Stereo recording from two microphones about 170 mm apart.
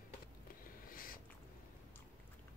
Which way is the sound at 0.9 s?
55° left (ahead or behind).